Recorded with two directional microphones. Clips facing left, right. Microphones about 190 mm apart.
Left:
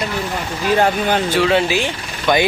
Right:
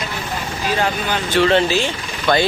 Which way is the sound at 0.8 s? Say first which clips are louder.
Left 5 dB; 50° left (ahead or behind).